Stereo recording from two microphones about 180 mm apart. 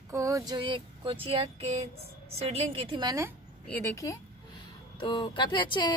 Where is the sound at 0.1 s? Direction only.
20° right (ahead or behind).